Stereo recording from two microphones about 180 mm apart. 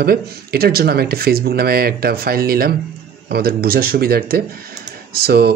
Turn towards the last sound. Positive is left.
turn(degrees=-60)  # may be behind; listen again after turning